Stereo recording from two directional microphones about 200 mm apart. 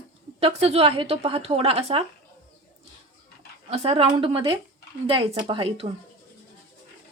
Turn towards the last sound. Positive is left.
turn(degrees=-30)  # may be behind; listen again after turning